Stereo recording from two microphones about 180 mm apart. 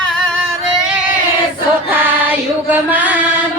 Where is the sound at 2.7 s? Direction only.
10° right (ahead or behind).